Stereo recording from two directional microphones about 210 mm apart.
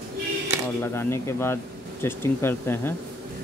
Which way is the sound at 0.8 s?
10° left (ahead or behind).